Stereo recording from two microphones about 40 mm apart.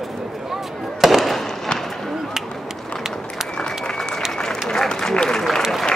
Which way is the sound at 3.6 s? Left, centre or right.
Centre.